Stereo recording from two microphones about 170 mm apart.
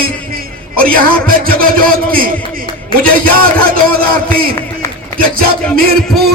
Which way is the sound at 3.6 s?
60° right (ahead or behind).